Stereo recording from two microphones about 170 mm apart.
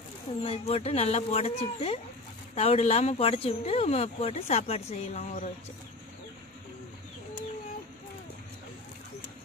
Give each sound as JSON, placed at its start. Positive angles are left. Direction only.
{"t": 0.4, "sound": "speech", "side_deg": 35}